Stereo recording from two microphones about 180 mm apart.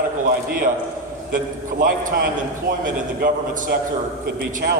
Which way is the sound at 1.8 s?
50° right (ahead or behind).